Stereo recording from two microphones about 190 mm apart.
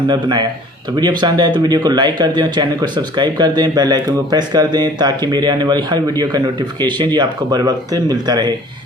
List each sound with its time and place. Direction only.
0.1 s speech: 20° right (ahead or behind)